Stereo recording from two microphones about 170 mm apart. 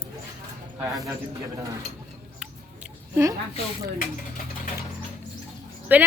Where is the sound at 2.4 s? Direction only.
5° right (ahead or behind).